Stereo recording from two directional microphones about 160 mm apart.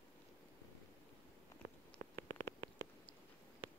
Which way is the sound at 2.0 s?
65° right (ahead or behind).